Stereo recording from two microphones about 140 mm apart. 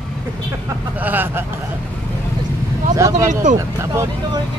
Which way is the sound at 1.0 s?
15° right (ahead or behind).